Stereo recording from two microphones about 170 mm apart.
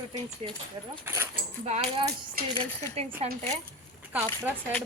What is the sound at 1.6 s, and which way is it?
Speech, 40° right (ahead or behind).